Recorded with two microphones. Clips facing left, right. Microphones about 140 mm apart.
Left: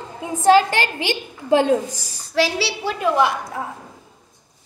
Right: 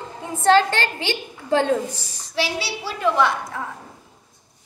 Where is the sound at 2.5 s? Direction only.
70° left (ahead or behind).